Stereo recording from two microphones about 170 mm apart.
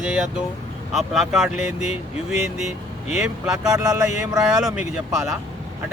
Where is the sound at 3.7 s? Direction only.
20° right (ahead or behind).